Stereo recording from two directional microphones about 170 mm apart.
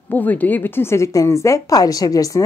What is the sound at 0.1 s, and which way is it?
A woman's voice, 10° left (ahead or behind).